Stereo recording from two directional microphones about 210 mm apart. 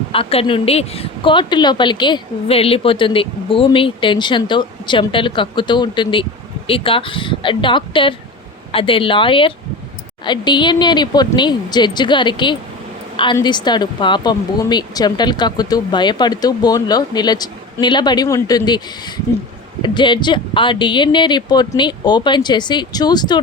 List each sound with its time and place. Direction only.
0.1 s a woman's voice: 25° left (ahead or behind)